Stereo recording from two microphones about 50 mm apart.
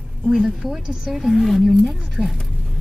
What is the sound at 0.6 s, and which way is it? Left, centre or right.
Speech, centre.